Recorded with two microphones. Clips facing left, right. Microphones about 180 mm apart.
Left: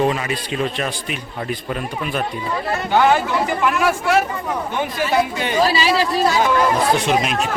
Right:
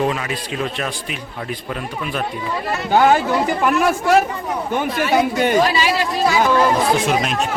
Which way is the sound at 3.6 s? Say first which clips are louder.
Right 1 dB; 45° right (ahead or behind).